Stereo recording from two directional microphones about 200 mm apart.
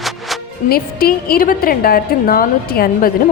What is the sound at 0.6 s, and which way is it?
A woman's voice, 50° left (ahead or behind).